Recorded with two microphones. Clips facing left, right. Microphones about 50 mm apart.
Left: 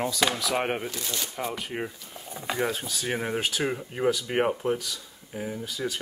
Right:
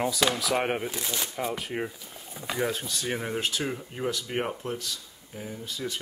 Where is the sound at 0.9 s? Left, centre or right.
Centre.